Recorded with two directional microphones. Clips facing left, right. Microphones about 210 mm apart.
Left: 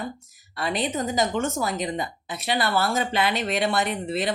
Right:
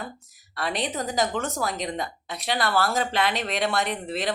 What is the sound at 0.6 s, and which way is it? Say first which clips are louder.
Speech: left 2 dB; centre (ahead or behind).